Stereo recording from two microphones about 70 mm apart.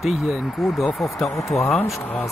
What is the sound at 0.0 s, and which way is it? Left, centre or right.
Speech, centre.